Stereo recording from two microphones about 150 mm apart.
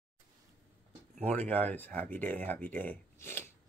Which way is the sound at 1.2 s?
10° left (ahead or behind).